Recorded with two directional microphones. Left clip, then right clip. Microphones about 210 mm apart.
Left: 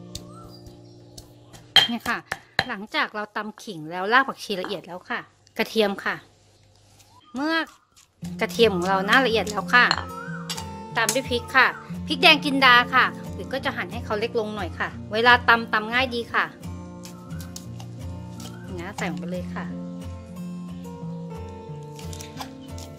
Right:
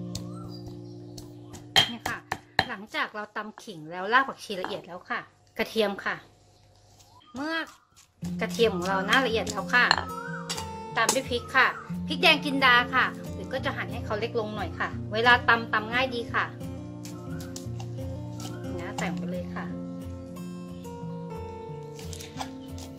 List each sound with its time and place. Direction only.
2.7 s a woman's voice: 55° left (ahead or behind)
7.3 s a woman's voice: 55° left (ahead or behind)
9.8 s music: centre (ahead or behind)
10.9 s a woman's voice: 55° left (ahead or behind)
16.6 s music: centre (ahead or behind)
18.8 s music: 55° left (ahead or behind)
19.2 s a woman's voice: 55° left (ahead or behind)
20.0 s music: centre (ahead or behind)